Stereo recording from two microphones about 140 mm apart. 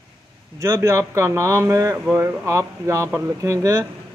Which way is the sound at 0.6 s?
20° right (ahead or behind).